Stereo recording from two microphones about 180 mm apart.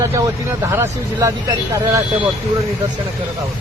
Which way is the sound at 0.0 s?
15° right (ahead or behind).